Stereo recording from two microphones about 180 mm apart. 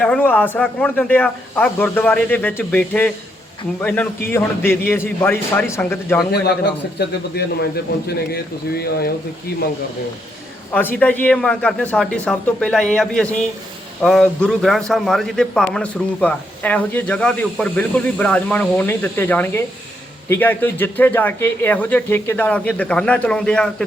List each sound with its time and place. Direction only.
0.0 s a man's voice: 10° left (ahead or behind)
7.0 s speech: 65° left (ahead or behind)
10.7 s a man's voice: 10° left (ahead or behind)